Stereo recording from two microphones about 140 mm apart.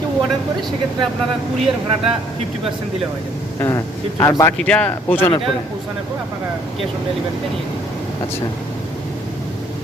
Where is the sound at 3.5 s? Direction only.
20° left (ahead or behind).